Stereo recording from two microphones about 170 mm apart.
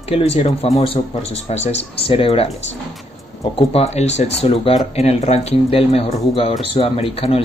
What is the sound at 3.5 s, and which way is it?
Speech, 35° left (ahead or behind).